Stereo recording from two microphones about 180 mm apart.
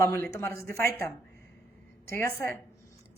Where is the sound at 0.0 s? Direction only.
15° left (ahead or behind).